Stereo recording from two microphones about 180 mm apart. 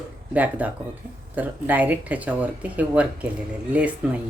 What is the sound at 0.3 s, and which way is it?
Speech, 10° right (ahead or behind).